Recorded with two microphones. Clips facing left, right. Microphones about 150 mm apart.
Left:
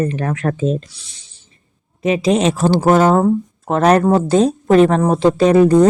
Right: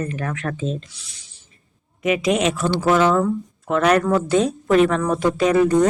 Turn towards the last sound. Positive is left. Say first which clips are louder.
# left 5 dB
turn(degrees=35)  # may be behind; listen again after turning